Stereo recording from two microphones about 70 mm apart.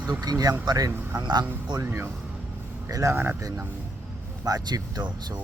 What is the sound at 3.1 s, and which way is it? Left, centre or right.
Speech, right.